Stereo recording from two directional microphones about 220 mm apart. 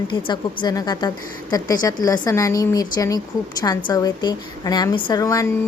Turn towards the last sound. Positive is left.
turn(degrees=15)  # may be behind; listen again after turning